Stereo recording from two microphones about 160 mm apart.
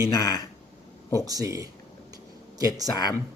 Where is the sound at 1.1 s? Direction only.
20° right (ahead or behind).